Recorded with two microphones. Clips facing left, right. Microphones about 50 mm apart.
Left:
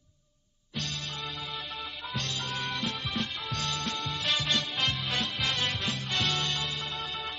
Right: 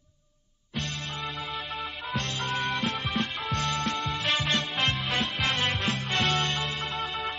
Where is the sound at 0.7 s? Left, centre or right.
Right.